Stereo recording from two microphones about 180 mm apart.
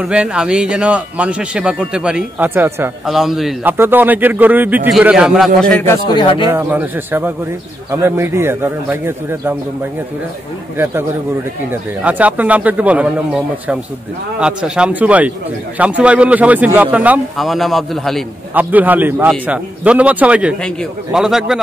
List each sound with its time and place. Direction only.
0.0 s a man's voice: 5° right (ahead or behind)
6.0 s speech: 25° left (ahead or behind)
6.5 s a man's voice: 10° right (ahead or behind)
12.0 s a man's voice: 10° right (ahead or behind)
18.5 s a man's voice: 10° right (ahead or behind)